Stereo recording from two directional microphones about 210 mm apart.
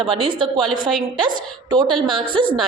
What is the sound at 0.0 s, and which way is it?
A woman's voice, 25° right (ahead or behind).